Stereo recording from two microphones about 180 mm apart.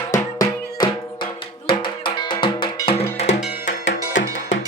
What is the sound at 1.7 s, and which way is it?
Cowbell, 25° left (ahead or behind).